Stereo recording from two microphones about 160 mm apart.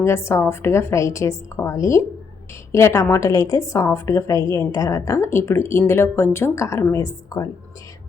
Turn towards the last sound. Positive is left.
turn(degrees=20)  # may be behind; listen again after turning